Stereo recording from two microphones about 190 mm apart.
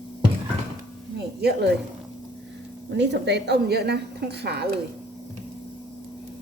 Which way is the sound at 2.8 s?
65° right (ahead or behind).